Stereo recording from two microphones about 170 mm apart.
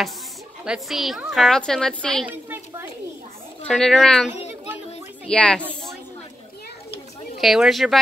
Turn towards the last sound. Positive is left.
turn(degrees=0)  # may be behind; listen again after turning